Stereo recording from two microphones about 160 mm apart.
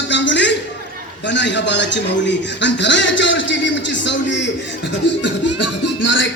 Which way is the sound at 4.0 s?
90° left.